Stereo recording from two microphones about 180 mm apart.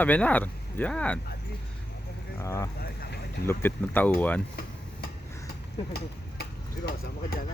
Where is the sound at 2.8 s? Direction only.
60° left (ahead or behind).